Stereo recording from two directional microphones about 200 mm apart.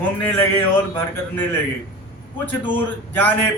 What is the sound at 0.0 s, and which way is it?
Speech, 10° left (ahead or behind).